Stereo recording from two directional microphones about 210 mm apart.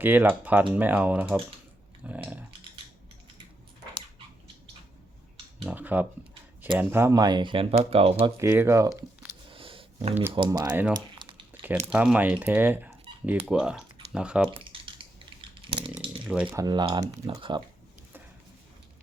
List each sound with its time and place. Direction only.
0.0 s speech: 10° right (ahead or behind)
5.6 s speech: 10° right (ahead or behind); by 8.1 s 30° right (ahead or behind)
8.4 s speech: 10° right (ahead or behind)
9.5 s a sound: 25° right (ahead or behind)
10.3 s speech: 20° right (ahead or behind)
10.7 s speech: 5° right (ahead or behind)
10.9 s a sound: 25° right (ahead or behind)
11.9 s speech: 5° right (ahead or behind)
14.5 s a sound: 25° right (ahead or behind)
16.2 s speech: 5° right (ahead or behind)
16.6 s speech: 20° right (ahead or behind)